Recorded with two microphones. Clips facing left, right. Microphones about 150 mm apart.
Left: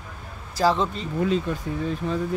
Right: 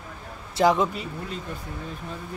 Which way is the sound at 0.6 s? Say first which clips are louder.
Right 1 dB; 15° right (ahead or behind).